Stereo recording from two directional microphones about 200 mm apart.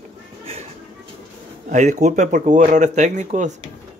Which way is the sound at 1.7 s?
35° right (ahead or behind).